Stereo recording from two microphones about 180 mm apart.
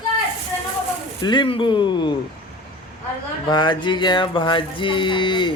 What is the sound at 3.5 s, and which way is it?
A woman's voice, 25° left (ahead or behind).